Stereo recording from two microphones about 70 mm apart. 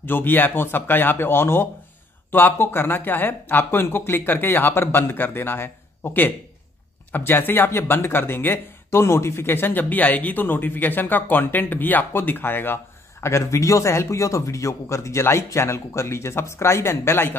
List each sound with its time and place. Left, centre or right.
0.0 s speech: left
13.2 s a man's voice: left